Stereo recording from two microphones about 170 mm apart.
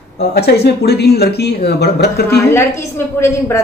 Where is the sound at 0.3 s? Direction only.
70° left (ahead or behind).